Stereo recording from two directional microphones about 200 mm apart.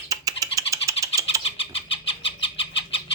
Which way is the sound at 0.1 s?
15° right (ahead or behind).